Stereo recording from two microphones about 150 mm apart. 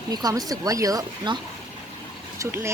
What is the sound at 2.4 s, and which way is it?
Speech, 20° right (ahead or behind).